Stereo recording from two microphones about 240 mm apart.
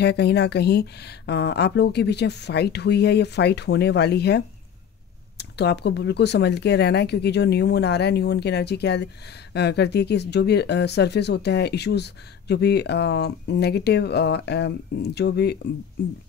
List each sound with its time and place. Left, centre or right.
0.0 s speech: left